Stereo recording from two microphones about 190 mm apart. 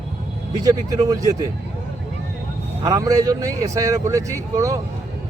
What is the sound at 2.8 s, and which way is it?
Speech, 20° right (ahead or behind).